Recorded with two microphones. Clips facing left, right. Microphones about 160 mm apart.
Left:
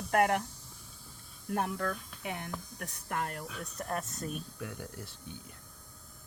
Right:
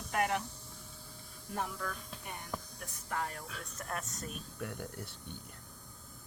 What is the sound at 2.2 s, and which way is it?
Speech, 90° left.